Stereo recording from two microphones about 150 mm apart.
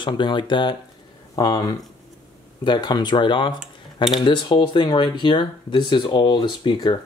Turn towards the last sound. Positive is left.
turn(degrees=30)  # may be behind; listen again after turning